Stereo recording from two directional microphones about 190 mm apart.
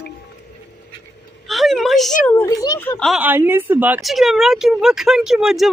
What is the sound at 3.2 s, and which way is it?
Speech, 10° right (ahead or behind).